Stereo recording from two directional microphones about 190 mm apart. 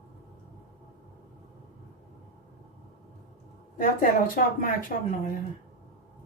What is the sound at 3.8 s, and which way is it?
Speech, 50° left (ahead or behind).